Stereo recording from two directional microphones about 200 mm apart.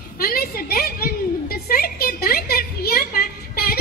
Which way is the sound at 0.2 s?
50° left (ahead or behind).